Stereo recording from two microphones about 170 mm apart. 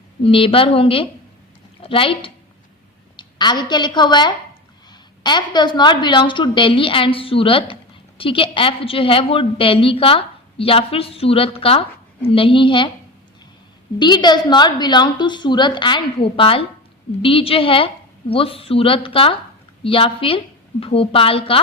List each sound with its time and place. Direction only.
0.2 s a woman's voice: 30° left (ahead or behind)
14.0 s a woman's voice: 25° left (ahead or behind)